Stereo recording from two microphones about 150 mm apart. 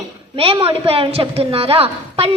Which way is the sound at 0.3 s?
40° right (ahead or behind).